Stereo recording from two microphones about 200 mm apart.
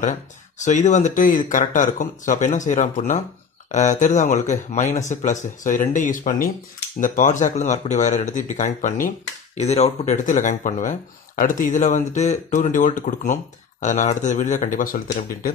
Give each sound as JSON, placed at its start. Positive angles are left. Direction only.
{"t": 0.0, "sound": "speech", "side_deg": 40}